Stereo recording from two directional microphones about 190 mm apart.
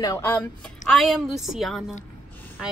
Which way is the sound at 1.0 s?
Centre (ahead or behind).